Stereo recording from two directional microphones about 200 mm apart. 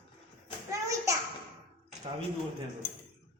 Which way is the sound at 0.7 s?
15° right (ahead or behind).